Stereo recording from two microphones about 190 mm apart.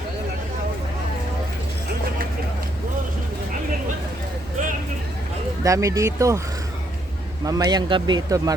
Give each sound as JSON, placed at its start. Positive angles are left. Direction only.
{"t": 5.6, "sound": "speech", "side_deg": -15}
{"t": 7.4, "sound": "speech", "side_deg": -20}